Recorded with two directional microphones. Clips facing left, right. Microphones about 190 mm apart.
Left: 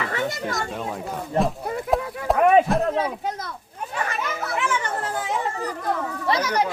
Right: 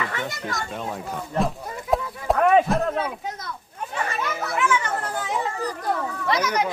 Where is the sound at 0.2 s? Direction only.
Centre (ahead or behind).